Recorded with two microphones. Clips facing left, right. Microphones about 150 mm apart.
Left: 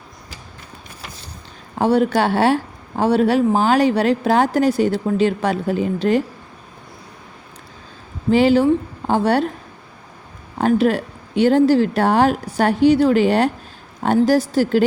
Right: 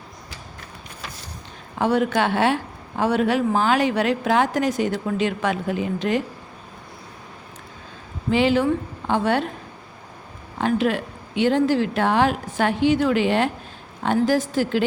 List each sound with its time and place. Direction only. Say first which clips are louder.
1.8 s a woman's voice: left 4 dB; 35° left (ahead or behind)
8.3 s a woman's voice: left 5 dB; 40° left (ahead or behind)
10.6 s a woman's voice: left 5 dB; 40° left (ahead or behind)